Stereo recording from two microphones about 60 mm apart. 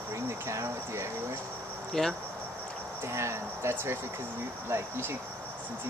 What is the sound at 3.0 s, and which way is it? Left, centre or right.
Speech, right.